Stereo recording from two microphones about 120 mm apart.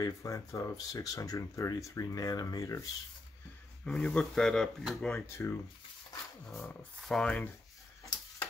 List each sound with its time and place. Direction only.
0.0 s speech: 25° left (ahead or behind)
3.8 s speech: 5° left (ahead or behind)
5.2 s speech: 20° left (ahead or behind)
7.1 s speech: 5° left (ahead or behind)